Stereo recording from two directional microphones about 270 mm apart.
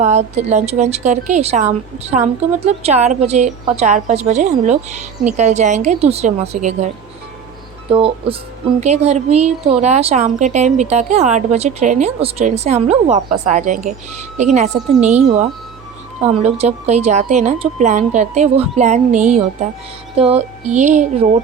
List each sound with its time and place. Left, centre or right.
0.0 s a woman's voice: right
7.9 s a woman's voice: centre
16.2 s a woman's voice: right
20.7 s a woman's voice: right